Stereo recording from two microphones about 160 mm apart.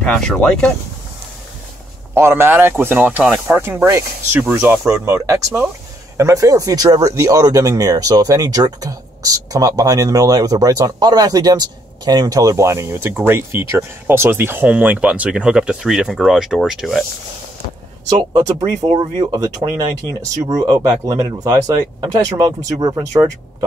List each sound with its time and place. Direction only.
0.0 s speech: 5° left (ahead or behind)
2.1 s speech: 15° right (ahead or behind)
18.3 s speech: 20° right (ahead or behind)
18.9 s speech: 35° right (ahead or behind)
20.4 s speech: 20° right (ahead or behind)